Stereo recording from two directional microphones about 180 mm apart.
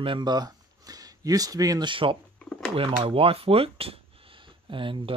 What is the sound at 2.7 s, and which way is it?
Speech, 30° right (ahead or behind).